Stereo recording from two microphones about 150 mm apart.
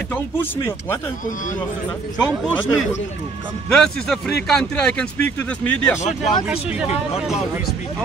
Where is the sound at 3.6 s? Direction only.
5° left (ahead or behind).